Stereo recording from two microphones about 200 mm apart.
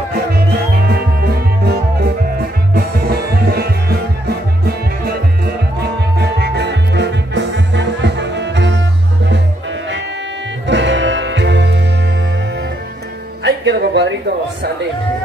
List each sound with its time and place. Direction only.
0.8 s music: 50° right (ahead or behind)
10.7 s music: 65° right (ahead or behind)
13.4 s music: 60° right (ahead or behind)